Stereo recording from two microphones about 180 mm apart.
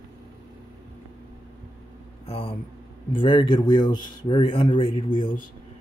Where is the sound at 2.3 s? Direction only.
30° left (ahead or behind).